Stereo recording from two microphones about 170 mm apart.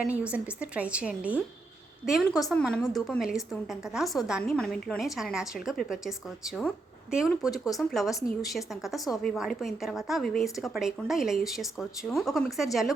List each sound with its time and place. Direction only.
0.0 s a woman's voice: 5° right (ahead or behind)
7.5 s speech: 20° left (ahead or behind)
7.9 s a woman's voice: centre (ahead or behind)